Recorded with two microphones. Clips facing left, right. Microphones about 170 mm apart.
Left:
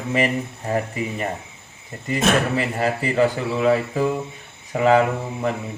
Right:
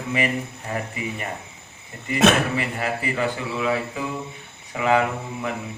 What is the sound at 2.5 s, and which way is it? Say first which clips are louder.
Speech: left 4 dB; 35° left (ahead or behind).